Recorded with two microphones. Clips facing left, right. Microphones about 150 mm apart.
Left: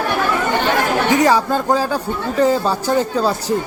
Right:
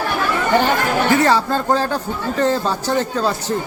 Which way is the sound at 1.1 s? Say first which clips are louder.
Left 2 dB; 15° left (ahead or behind).